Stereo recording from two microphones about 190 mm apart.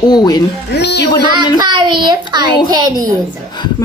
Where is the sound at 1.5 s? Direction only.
25° right (ahead or behind).